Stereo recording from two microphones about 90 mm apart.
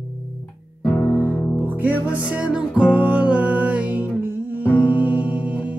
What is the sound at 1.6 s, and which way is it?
Music, 20° right (ahead or behind).